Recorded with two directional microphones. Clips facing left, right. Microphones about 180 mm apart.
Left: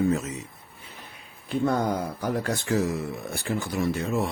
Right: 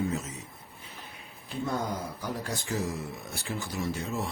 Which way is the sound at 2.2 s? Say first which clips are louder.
Left 7 dB; 65° left (ahead or behind).